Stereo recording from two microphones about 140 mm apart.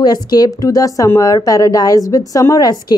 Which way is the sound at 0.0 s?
30° left (ahead or behind).